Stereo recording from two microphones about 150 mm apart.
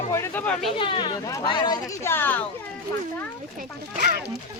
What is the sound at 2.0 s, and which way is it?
Speech, 15° left (ahead or behind).